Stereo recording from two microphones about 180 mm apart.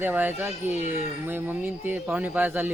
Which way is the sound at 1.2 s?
10° right (ahead or behind).